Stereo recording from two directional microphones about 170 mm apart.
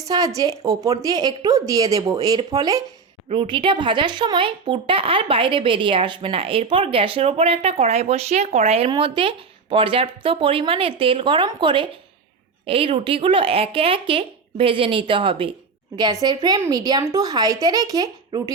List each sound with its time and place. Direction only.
0.0 s a woman's voice: 20° right (ahead or behind)